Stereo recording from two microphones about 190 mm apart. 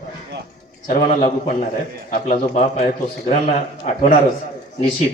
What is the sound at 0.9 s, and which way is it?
A man's voice, 35° left (ahead or behind).